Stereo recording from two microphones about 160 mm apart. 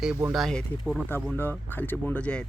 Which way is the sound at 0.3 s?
Centre (ahead or behind).